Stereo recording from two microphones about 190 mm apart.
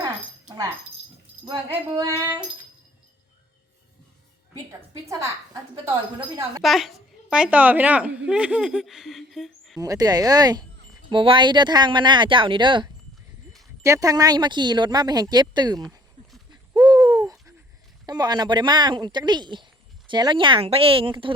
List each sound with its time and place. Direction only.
0.0 s a sound: 20° right (ahead or behind)
4.7 s a sound: 15° right (ahead or behind)
6.6 s a woman's voice: centre (ahead or behind)
9.8 s speech: 20° right (ahead or behind)
16.5 s bird: 20° right (ahead or behind)
18.0 s speech: 20° right (ahead or behind)